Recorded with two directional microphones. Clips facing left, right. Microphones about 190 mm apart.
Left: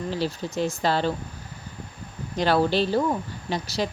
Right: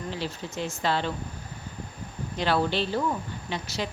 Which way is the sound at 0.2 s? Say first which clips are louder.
Left 6 dB; 35° left (ahead or behind).